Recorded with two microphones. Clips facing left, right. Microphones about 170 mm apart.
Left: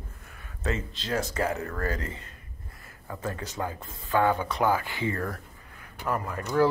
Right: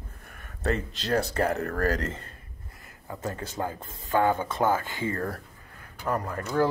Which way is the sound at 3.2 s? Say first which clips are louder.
Right 1 dB; 35° right (ahead or behind).